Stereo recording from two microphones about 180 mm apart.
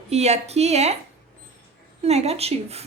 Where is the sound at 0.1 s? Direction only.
35° right (ahead or behind).